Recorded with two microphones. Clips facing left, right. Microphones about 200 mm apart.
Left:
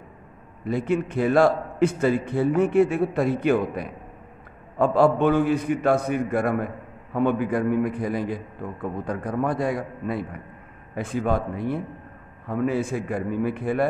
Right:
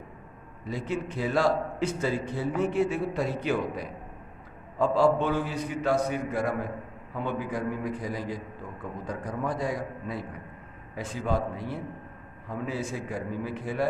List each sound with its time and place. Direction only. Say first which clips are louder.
0.7 s a man's voice: left 8 dB; 55° left (ahead or behind)